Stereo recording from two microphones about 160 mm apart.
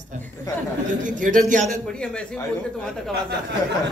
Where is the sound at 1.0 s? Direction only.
55° right (ahead or behind).